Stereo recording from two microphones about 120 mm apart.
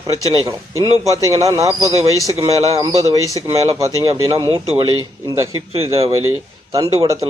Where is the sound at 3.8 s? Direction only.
30° right (ahead or behind).